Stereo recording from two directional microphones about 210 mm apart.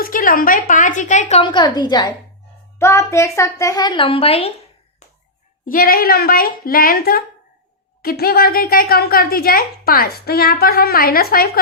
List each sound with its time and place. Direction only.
0.0 s a woman's voice: 40° left (ahead or behind)
5.6 s a woman's voice: 45° left (ahead or behind)